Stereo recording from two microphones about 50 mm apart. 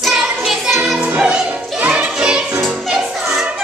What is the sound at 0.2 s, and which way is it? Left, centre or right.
Music, centre.